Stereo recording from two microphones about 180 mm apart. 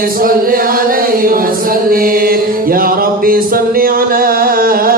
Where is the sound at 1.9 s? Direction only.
55° right (ahead or behind).